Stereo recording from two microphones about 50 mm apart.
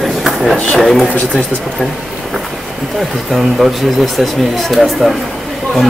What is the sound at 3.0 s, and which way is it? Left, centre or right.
Speech, centre.